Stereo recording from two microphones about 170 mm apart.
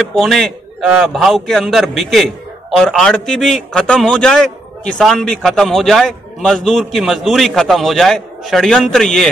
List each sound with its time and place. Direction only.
0.0 s a man's voice: centre (ahead or behind)